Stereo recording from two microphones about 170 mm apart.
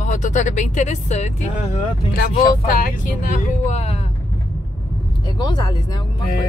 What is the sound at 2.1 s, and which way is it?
Speech, 55° left (ahead or behind).